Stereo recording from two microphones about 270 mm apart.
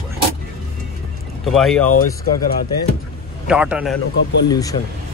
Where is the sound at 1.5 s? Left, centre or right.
Centre.